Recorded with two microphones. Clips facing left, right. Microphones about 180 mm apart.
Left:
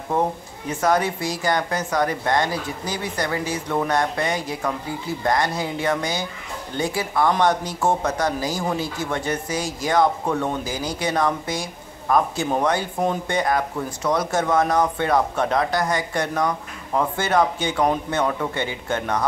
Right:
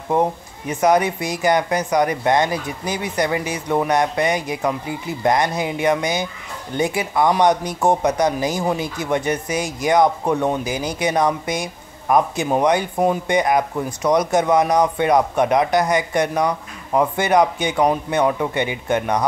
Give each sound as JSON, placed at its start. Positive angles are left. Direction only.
{"t": 0.1, "sound": "speech", "side_deg": -15}